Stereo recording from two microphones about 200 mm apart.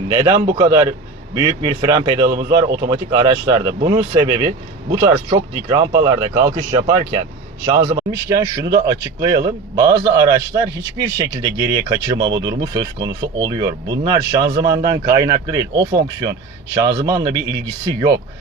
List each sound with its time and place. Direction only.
0.1 s a man's voice: 20° right (ahead or behind)